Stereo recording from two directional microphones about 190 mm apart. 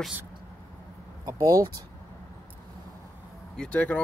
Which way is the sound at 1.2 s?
15° right (ahead or behind).